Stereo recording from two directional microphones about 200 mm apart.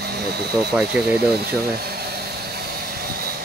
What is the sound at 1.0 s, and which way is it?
Speech, 5° right (ahead or behind).